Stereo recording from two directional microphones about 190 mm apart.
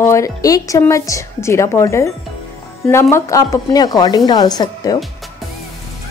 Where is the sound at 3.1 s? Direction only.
15° left (ahead or behind).